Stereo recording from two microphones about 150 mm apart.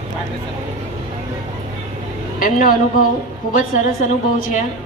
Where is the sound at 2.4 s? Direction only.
65° left (ahead or behind).